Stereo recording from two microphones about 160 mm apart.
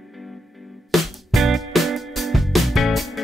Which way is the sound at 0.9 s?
Centre (ahead or behind).